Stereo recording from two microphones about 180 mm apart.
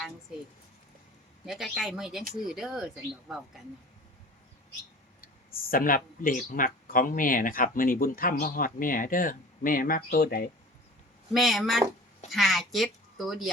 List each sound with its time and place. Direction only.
1.5 s a woman's voice: centre (ahead or behind)
5.5 s speech: 50° left (ahead or behind)
11.3 s a woman's voice: centre (ahead or behind)